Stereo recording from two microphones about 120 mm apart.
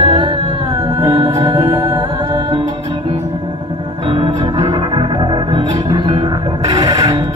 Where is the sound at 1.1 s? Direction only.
30° right (ahead or behind).